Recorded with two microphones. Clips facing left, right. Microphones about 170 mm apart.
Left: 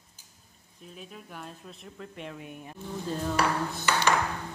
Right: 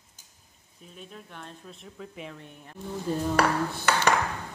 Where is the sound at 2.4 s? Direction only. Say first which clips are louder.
Left 5 dB; 15° left (ahead or behind).